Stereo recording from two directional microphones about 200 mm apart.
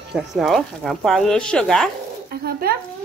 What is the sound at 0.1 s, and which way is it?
Speech, centre (ahead or behind).